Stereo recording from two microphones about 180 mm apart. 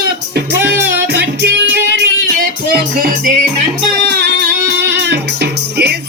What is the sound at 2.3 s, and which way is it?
Music, 50° right (ahead or behind).